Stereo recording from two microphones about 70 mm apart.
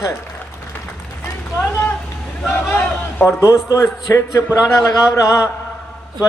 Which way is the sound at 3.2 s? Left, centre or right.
Left.